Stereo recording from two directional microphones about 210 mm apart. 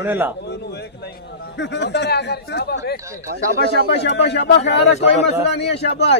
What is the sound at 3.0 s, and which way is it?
Speech, 15° right (ahead or behind).